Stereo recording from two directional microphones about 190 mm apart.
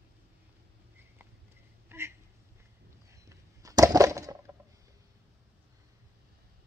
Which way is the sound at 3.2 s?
15° right (ahead or behind).